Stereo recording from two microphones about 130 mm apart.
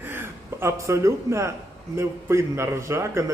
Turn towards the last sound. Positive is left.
turn(degrees=-20)  # may be behind; listen again after turning